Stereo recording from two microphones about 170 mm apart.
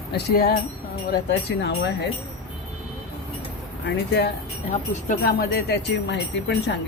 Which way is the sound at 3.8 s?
75° left (ahead or behind).